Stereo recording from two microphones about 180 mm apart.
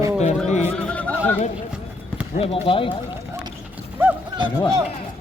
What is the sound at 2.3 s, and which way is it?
Speech, 35° left (ahead or behind).